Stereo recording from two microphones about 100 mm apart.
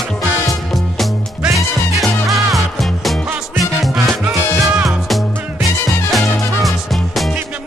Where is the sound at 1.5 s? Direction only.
Centre (ahead or behind).